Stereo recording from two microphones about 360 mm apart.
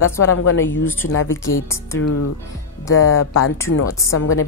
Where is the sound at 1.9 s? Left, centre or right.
Left.